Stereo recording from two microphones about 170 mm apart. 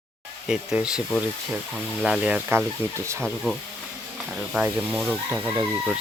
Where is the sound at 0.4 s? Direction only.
5° right (ahead or behind).